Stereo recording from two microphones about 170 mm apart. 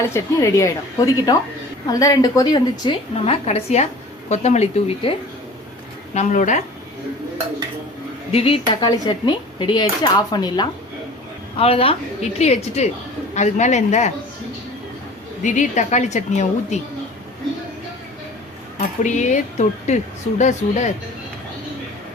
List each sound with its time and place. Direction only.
0.0 s a woman's voice: 15° left (ahead or behind); by 5.1 s 40° left (ahead or behind)
6.1 s a woman's voice: 45° left (ahead or behind)
8.3 s a woman's voice: 35° left (ahead or behind)
15.4 s a woman's voice: 45° left (ahead or behind)
19.0 s a woman's voice: 45° left (ahead or behind)